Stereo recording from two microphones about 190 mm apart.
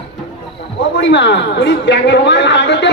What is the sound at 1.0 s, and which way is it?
A woman's voice, 70° left (ahead or behind).